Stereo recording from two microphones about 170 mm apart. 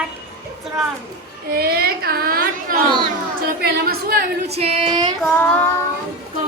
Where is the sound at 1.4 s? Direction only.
65° right (ahead or behind).